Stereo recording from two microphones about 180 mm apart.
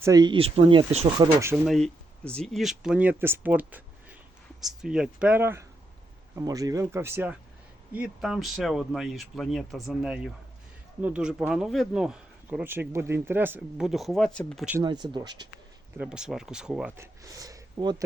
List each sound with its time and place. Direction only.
0.0 s speech: 20° right (ahead or behind)
1.2 s speech: 15° right (ahead or behind)
1.6 s speech: centre (ahead or behind)
14.8 s speech: 25° right (ahead or behind)
16.0 s speech: 5° right (ahead or behind)
17.0 s speech: 20° right (ahead or behind)